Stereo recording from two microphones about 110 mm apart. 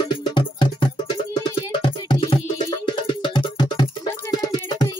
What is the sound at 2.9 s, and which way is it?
Music, 45° left (ahead or behind).